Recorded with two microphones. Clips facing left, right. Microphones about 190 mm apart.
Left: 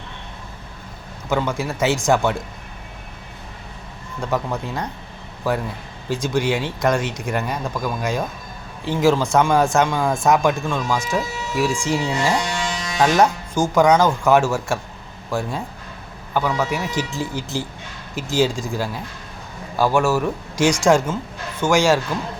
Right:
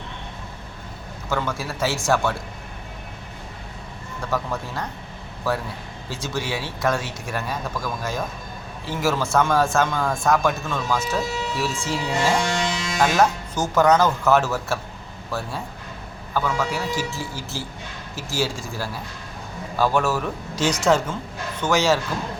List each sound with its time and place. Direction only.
1.3 s speech: 15° left (ahead or behind)
4.3 s speech: 20° left (ahead or behind)